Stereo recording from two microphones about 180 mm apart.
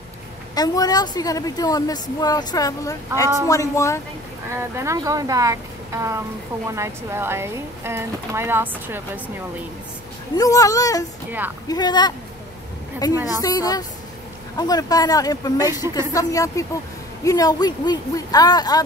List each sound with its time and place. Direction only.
0.6 s a woman's voice: 20° left (ahead or behind)
4.6 s speech: 15° right (ahead or behind)
10.3 s a woman's voice: 20° left (ahead or behind)